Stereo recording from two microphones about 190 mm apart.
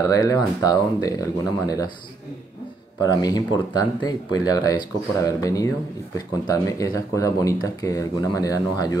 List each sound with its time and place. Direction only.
0.1 s speech: 15° left (ahead or behind)
3.0 s speech: 20° left (ahead or behind)